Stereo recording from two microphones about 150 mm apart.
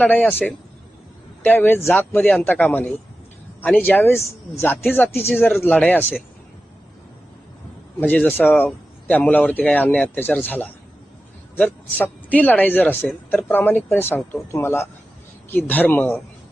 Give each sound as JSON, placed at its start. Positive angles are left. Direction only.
{"t": 0.0, "sound": "speech", "side_deg": 10}
{"t": 8.0, "sound": "speech", "side_deg": 10}